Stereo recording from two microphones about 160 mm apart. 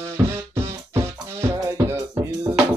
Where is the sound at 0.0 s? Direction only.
20° right (ahead or behind).